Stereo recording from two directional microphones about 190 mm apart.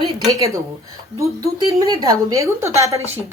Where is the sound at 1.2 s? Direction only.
15° right (ahead or behind).